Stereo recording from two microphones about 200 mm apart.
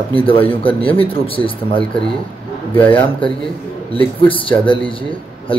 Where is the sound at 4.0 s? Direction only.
25° left (ahead or behind).